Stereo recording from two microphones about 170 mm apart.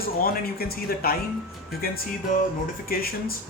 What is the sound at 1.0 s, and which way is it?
Speech, 60° left (ahead or behind).